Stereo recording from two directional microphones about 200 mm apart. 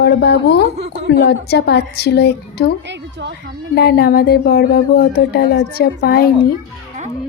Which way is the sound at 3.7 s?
55° left (ahead or behind).